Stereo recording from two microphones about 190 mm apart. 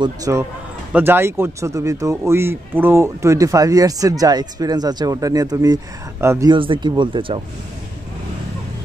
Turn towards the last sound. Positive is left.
turn(degrees=-25)  # may be behind; listen again after turning